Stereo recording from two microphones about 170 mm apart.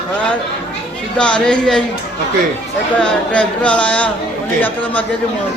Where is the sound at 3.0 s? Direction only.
5° left (ahead or behind).